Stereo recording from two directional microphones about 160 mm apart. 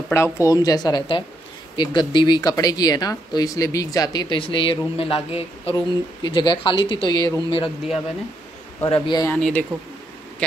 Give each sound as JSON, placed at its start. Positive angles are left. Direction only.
{"t": 0.1, "sound": "speech", "side_deg": 20}
{"t": 8.8, "sound": "speech", "side_deg": 30}
{"t": 9.3, "sound": "speech", "side_deg": 10}